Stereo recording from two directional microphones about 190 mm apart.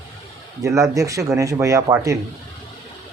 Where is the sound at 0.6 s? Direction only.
15° right (ahead or behind).